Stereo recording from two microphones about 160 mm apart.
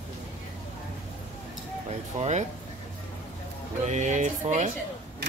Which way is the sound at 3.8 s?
45° right (ahead or behind).